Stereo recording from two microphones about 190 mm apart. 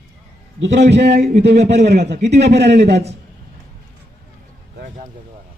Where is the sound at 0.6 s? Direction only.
65° right (ahead or behind).